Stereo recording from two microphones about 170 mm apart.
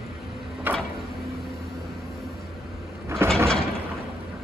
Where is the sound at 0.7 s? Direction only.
10° right (ahead or behind).